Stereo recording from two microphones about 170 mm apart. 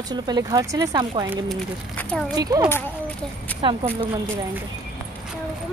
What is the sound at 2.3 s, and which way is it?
Speech, 20° right (ahead or behind).